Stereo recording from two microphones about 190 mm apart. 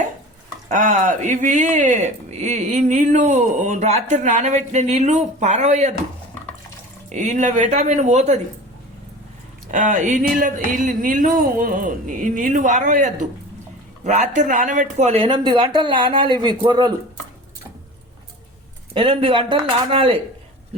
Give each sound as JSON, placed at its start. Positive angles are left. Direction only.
{"t": 0.7, "sound": "speech", "side_deg": -40}
{"t": 7.1, "sound": "speech", "side_deg": -40}
{"t": 9.7, "sound": "speech", "side_deg": -40}
{"t": 18.9, "sound": "speech", "side_deg": -25}